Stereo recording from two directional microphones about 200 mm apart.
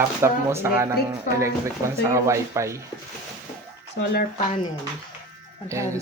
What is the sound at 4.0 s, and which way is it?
Speech, 55° left (ahead or behind).